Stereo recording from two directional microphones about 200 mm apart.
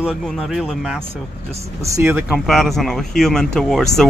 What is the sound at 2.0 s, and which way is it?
Speech, 5° right (ahead or behind).